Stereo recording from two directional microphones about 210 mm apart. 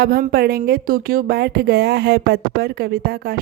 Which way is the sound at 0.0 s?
45° right (ahead or behind).